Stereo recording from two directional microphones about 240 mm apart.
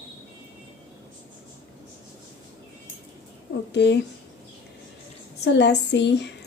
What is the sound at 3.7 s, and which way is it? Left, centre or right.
Speech, left.